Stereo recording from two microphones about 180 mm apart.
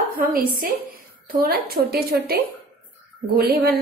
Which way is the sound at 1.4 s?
60° right (ahead or behind).